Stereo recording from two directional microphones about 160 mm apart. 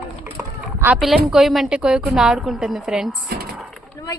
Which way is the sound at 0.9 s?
Centre (ahead or behind).